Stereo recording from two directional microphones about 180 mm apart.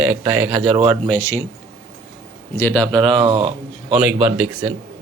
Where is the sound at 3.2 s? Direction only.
30° right (ahead or behind).